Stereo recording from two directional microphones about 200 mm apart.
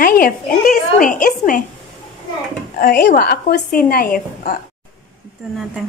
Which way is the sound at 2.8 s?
45° left (ahead or behind).